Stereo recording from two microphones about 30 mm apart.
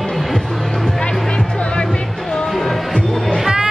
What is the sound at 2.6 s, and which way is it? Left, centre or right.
Music, centre.